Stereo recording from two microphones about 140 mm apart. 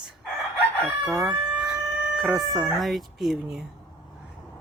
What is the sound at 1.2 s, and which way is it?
Speech, 10° right (ahead or behind).